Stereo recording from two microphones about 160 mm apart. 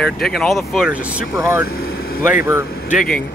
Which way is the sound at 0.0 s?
5° left (ahead or behind).